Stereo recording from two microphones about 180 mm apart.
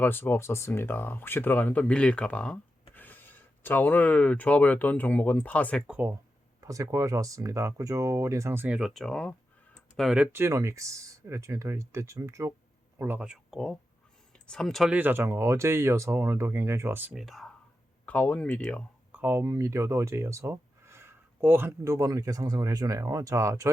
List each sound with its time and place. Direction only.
0.0 s speech: 10° left (ahead or behind)
5.9 s speech: 10° right (ahead or behind)
10.3 s speech: 15° right (ahead or behind)
17.2 s speech: centre (ahead or behind)
19.1 s speech: 10° right (ahead or behind)